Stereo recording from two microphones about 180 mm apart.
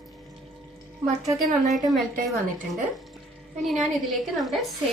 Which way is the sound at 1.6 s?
Centre (ahead or behind).